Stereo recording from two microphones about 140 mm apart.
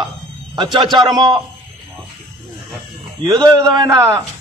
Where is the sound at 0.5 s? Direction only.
30° right (ahead or behind).